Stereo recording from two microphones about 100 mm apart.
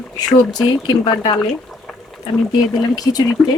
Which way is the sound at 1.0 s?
55° left (ahead or behind).